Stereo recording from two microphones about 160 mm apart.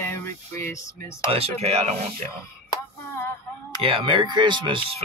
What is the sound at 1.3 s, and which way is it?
Speech, 40° right (ahead or behind).